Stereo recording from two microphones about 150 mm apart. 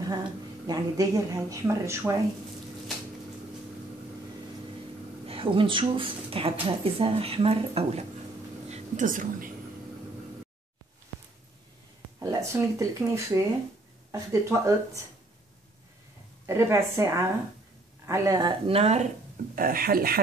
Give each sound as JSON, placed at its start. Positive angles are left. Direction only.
{"t": 0.7, "sound": "speech", "side_deg": -25}
{"t": 5.2, "sound": "speech", "side_deg": -35}
{"t": 8.6, "sound": "a woman's voice", "side_deg": -50}
{"t": 12.2, "sound": "speech", "side_deg": -20}
{"t": 16.4, "sound": "speech", "side_deg": -20}
{"t": 19.5, "sound": "speech", "side_deg": -75}